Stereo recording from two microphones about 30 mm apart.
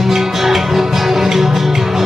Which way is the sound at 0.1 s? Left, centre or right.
Centre.